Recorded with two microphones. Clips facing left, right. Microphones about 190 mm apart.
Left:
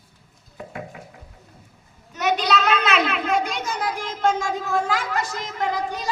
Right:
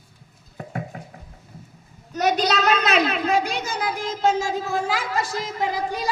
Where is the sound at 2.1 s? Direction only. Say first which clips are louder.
Right 1 dB; 40° right (ahead or behind).